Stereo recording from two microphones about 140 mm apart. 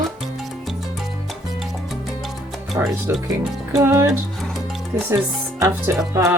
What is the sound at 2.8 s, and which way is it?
Speech, 20° right (ahead or behind).